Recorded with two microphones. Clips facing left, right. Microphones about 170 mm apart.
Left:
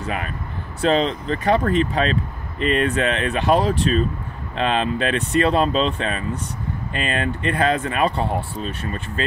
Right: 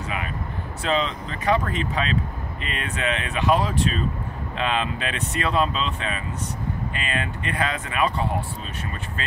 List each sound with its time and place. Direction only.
0.8 s speech: 35° left (ahead or behind)